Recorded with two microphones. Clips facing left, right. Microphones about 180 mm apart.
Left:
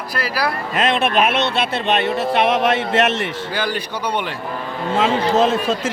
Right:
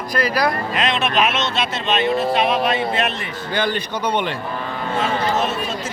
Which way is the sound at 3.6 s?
10° left (ahead or behind).